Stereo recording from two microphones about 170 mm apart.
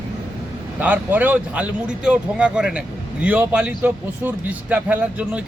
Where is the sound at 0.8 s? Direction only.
10° right (ahead or behind).